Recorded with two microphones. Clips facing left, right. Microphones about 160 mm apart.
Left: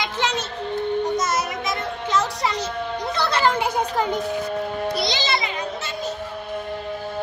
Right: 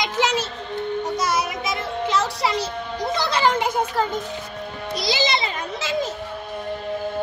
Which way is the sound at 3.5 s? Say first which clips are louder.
Even; 10° left (ahead or behind).